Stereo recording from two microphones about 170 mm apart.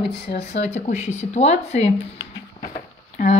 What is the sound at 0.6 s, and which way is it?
A woman's voice, 45° left (ahead or behind).